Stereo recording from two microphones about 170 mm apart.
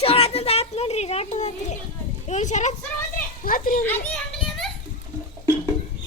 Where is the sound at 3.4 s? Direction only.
55° left (ahead or behind).